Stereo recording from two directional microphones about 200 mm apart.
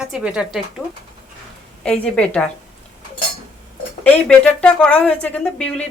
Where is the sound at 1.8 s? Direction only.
5° left (ahead or behind).